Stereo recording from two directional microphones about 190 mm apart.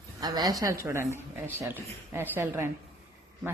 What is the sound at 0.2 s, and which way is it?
A woman's voice, 20° right (ahead or behind).